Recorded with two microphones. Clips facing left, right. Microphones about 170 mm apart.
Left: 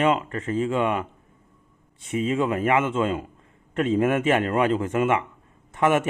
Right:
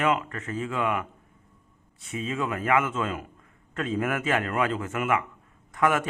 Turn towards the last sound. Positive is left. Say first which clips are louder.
# left 3 dB
turn(degrees=25)  # may be behind; listen again after turning